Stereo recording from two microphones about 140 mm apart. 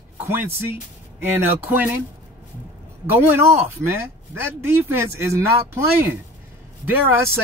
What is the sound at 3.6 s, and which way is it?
Speech, 15° right (ahead or behind).